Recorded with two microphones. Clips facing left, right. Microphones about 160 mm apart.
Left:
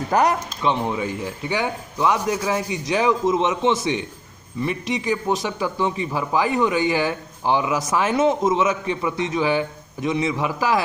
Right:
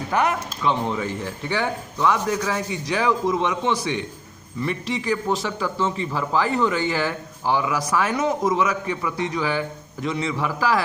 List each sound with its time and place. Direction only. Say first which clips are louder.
0.1 s speech: left 3 dB; 35° left (ahead or behind)
0.6 s a man's voice: even; 15° left (ahead or behind)